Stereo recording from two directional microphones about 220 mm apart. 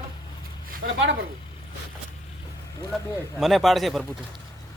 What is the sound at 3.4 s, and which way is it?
Speech, centre (ahead or behind).